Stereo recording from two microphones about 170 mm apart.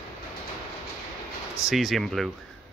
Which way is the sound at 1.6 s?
Centre (ahead or behind).